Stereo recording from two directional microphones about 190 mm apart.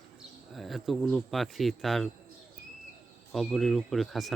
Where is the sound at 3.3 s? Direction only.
Centre (ahead or behind).